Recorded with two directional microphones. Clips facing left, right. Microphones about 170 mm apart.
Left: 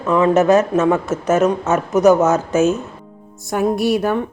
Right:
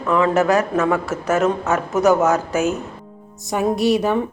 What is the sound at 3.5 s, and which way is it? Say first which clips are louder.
Music: left 1 dB; centre (ahead or behind).